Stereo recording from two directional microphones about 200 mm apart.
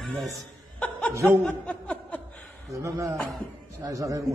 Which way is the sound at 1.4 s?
5° left (ahead or behind).